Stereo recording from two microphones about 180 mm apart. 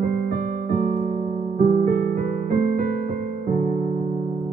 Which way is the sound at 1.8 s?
50° right (ahead or behind).